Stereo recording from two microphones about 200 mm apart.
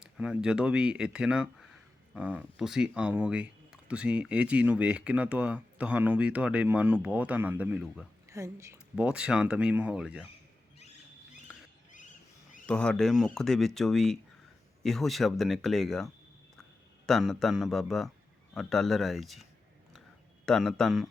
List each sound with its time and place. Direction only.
0.0 s speech: 5° right (ahead or behind)
11.9 s a sound: 40° left (ahead or behind)
12.6 s speech: 5° left (ahead or behind)